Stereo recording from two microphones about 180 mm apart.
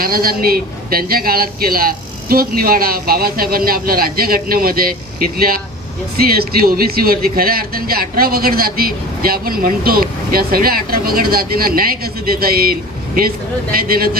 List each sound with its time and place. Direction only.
0.0 s speech: 55° right (ahead or behind)
13.7 s speech: 55° right (ahead or behind)